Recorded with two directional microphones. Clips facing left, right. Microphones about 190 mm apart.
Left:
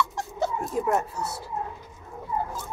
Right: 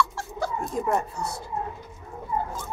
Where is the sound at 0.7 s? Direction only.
Centre (ahead or behind).